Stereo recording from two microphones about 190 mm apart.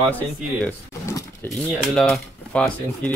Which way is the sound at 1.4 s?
Centre (ahead or behind).